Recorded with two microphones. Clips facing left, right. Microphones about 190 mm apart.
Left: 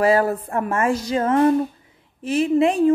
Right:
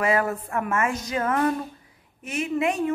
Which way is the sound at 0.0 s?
35° left (ahead or behind).